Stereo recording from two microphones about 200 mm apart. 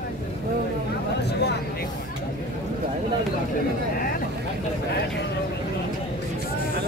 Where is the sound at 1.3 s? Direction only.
55° left (ahead or behind).